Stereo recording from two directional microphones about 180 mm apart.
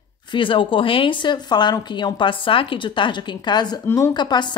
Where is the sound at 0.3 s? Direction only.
30° left (ahead or behind).